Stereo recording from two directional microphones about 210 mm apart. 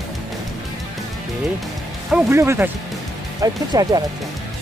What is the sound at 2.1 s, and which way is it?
Speech, 10° right (ahead or behind).